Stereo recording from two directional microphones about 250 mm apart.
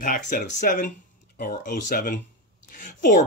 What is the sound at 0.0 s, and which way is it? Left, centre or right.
Speech, left.